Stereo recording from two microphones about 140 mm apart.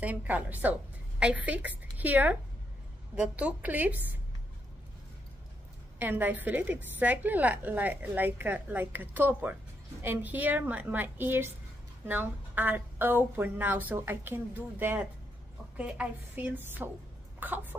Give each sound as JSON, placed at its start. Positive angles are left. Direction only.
{"t": 0.0, "sound": "a woman's voice", "side_deg": -10}
{"t": 5.9, "sound": "a woman's voice", "side_deg": -15}
{"t": 17.4, "sound": "a sound", "side_deg": -15}